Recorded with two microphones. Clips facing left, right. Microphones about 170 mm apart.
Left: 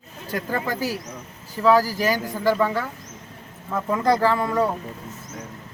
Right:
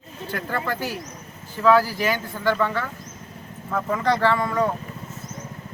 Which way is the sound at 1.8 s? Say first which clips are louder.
Left 2 dB; 40° left (ahead or behind).